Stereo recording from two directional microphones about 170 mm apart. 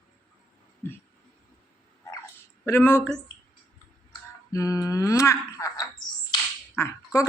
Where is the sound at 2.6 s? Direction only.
15° left (ahead or behind).